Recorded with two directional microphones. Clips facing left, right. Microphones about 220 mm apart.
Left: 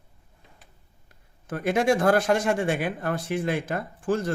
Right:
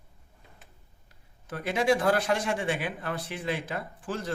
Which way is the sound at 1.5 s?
50° left (ahead or behind).